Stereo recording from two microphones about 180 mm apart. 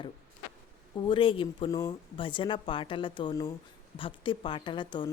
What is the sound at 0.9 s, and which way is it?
A woman's voice, 30° left (ahead or behind).